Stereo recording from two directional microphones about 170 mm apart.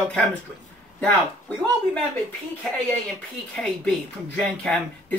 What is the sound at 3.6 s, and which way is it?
Speech, 5° left (ahead or behind).